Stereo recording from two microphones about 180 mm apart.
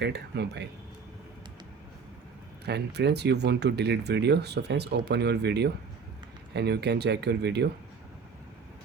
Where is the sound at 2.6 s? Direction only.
70° right (ahead or behind).